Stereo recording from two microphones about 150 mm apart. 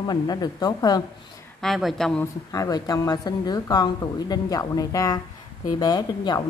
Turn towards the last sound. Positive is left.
turn(degrees=25)  # may be behind; listen again after turning